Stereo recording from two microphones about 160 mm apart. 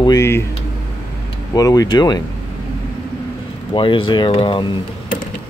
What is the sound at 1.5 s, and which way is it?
Speech, 25° left (ahead or behind).